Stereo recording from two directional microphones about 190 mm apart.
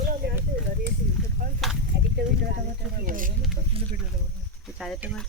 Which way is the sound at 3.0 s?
45° right (ahead or behind).